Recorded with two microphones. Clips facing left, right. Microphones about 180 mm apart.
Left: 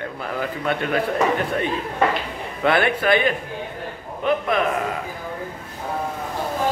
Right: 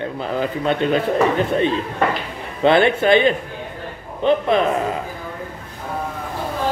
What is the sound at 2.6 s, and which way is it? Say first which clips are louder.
A man's voice: right 5 dB; 25° right (ahead or behind).